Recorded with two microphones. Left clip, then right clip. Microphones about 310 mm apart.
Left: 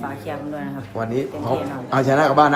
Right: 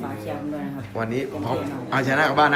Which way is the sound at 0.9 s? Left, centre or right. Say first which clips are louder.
Left 3 dB; centre.